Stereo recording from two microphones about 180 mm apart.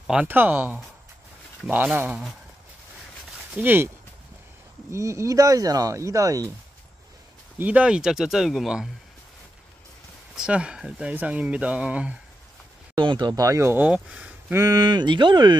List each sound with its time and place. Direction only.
0.0 s speech: 5° right (ahead or behind)
3.5 s speech: 10° right (ahead or behind)
4.9 s speech: 15° right (ahead or behind)
7.5 s speech: 10° right (ahead or behind)
10.3 s speech: 5° right (ahead or behind)
12.9 s speech: 25° right (ahead or behind); by 14.6 s 5° right (ahead or behind)
14.6 s speech: 20° right (ahead or behind)